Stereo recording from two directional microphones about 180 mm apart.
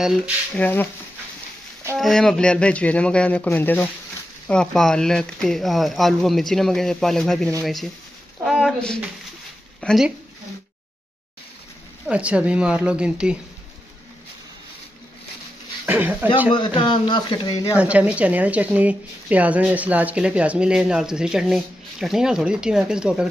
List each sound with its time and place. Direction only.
0.6 s speech: 10° left (ahead or behind)
2.0 s speech: centre (ahead or behind)
8.5 s a sound: centre (ahead or behind)
9.8 s speech: centre (ahead or behind)
12.1 s a woman's voice: 5° right (ahead or behind)
15.8 s speech: 10° right (ahead or behind)
16.4 s speech: 30° left (ahead or behind)
17.7 s speech: 5° right (ahead or behind)